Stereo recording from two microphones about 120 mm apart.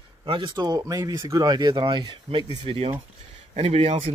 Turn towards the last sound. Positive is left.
turn(degrees=-55)  # may be behind; listen again after turning